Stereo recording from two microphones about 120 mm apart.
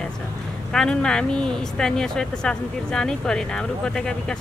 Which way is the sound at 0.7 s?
5° left (ahead or behind).